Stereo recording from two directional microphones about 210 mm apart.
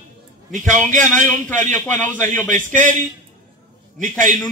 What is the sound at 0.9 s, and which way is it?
A man's voice, 40° right (ahead or behind).